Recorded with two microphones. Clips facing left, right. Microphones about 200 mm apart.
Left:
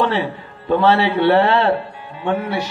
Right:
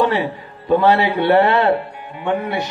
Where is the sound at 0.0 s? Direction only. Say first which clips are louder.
Right 1 dB; 15° right (ahead or behind).